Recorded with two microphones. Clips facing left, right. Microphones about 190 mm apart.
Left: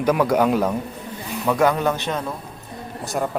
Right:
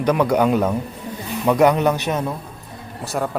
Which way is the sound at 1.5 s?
20° right (ahead or behind).